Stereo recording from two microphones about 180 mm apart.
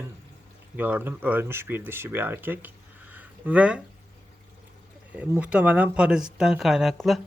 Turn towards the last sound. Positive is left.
turn(degrees=0)  # may be behind; listen again after turning